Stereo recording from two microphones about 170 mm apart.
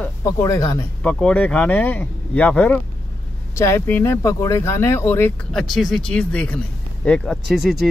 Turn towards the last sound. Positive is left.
turn(degrees=0)  # may be behind; listen again after turning